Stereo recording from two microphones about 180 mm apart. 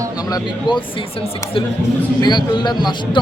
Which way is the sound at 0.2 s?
20° left (ahead or behind).